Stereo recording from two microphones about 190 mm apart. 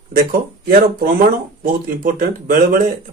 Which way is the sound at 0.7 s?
50° right (ahead or behind).